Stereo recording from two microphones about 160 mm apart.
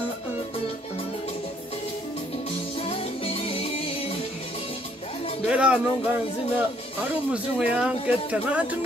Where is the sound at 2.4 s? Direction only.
40° left (ahead or behind).